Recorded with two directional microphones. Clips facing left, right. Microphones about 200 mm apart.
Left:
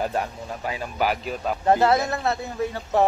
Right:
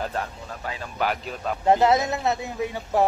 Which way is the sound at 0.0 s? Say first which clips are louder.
Left 3 dB; 15° left (ahead or behind).